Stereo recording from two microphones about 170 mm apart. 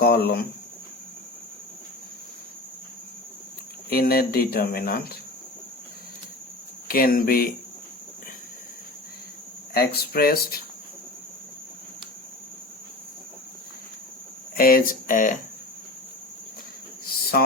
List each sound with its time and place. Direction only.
0.0 s a sound: 65° left (ahead or behind)
3.8 s speech: 65° left (ahead or behind)
6.8 s speech: 60° left (ahead or behind)
9.7 s speech: 65° left (ahead or behind)
14.5 s speech: 60° left (ahead or behind)
17.4 s a sound: 65° left (ahead or behind)